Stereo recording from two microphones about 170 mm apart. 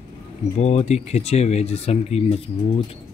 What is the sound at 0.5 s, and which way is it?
Speech, 40° left (ahead or behind).